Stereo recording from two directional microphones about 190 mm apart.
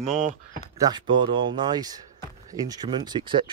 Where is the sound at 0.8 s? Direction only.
25° right (ahead or behind).